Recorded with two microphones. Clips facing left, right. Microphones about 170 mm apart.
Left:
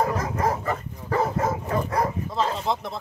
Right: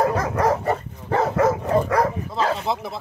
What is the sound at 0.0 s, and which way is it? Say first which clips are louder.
Bow-wow: right 4 dB; 75° right (ahead or behind).